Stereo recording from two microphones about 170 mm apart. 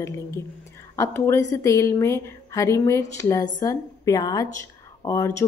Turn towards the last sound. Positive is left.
turn(degrees=20)  # may be behind; listen again after turning